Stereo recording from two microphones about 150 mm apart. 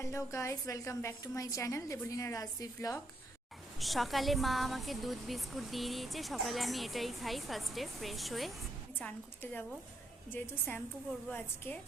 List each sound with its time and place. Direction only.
0.0 s a woman's voice: 20° left (ahead or behind)
3.8 s speech: centre (ahead or behind)
9.0 s a woman's voice: 10° left (ahead or behind)